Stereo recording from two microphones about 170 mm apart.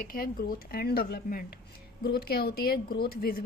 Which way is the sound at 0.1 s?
55° left (ahead or behind).